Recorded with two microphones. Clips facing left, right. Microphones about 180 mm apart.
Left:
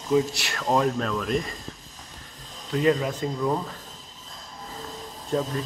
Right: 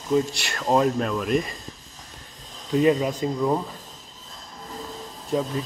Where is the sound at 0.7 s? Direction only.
10° right (ahead or behind).